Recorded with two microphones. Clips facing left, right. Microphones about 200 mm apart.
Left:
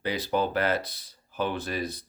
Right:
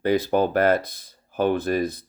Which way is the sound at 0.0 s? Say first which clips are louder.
Right 7 dB; 50° right (ahead or behind).